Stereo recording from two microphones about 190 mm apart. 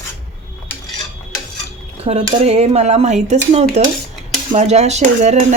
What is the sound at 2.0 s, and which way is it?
Speech, 35° right (ahead or behind).